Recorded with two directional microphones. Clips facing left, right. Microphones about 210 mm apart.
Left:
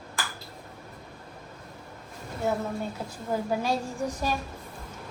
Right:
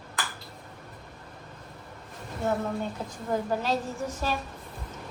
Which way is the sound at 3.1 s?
10° left (ahead or behind).